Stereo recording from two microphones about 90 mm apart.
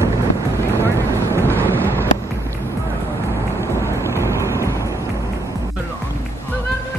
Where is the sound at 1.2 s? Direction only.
25° left (ahead or behind).